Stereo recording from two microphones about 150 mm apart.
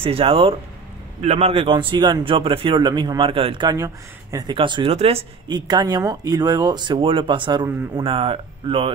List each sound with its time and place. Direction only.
0.0 s speech: 40° right (ahead or behind)
3.7 s speech: 20° right (ahead or behind)
4.6 s speech: 35° right (ahead or behind)
5.5 s speech: 30° right (ahead or behind)